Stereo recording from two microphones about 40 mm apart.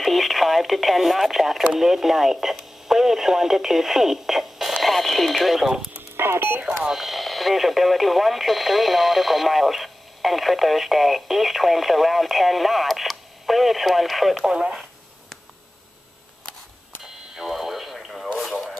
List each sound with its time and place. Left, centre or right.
0.0 s radio: centre
1.7 s speech: centre
6.1 s speech: right
6.9 s speech: centre
17.0 s radio: centre